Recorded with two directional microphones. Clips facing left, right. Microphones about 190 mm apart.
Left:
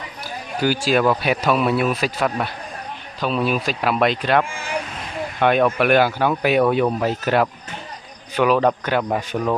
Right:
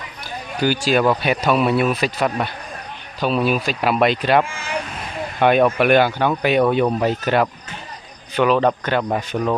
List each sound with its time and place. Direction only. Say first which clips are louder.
0.6 s speech: right 1 dB; centre (ahead or behind)